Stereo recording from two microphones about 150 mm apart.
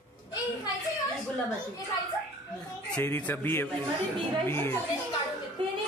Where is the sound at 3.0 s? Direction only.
10° left (ahead or behind).